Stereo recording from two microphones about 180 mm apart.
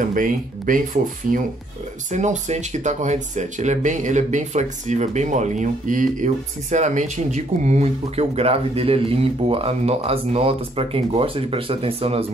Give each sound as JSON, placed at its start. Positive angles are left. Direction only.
{"t": 0.0, "sound": "speech", "side_deg": -50}